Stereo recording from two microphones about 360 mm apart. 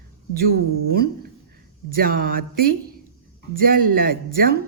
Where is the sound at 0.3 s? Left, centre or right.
Right.